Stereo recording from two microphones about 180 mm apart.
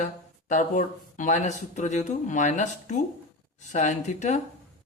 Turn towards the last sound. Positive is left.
turn(degrees=40)  # may be behind; listen again after turning